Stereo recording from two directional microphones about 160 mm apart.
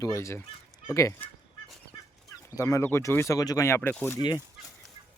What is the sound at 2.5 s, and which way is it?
Speech, 15° left (ahead or behind).